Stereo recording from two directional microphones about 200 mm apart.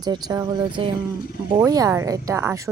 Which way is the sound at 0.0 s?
20° right (ahead or behind).